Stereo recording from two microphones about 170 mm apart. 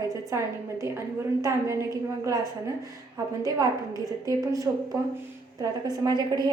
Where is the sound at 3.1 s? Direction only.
20° right (ahead or behind).